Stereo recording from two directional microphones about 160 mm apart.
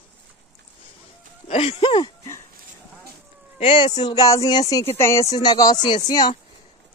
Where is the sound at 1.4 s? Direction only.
40° left (ahead or behind).